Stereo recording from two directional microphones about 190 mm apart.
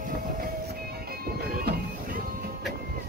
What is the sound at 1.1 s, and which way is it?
Music, 55° right (ahead or behind).